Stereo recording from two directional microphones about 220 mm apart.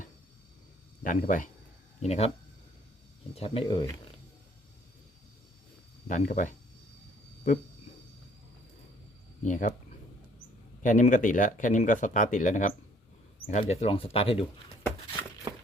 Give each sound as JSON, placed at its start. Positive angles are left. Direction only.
{"t": 1.0, "sound": "speech", "side_deg": 35}
{"t": 3.3, "sound": "speech", "side_deg": 25}
{"t": 6.1, "sound": "speech", "side_deg": 35}
{"t": 9.4, "sound": "speech", "side_deg": 35}
{"t": 10.8, "sound": "speech", "side_deg": 35}